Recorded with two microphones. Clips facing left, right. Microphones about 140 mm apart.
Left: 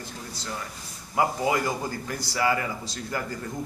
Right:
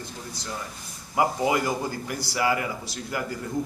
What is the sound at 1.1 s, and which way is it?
A man's voice, 15° right (ahead or behind).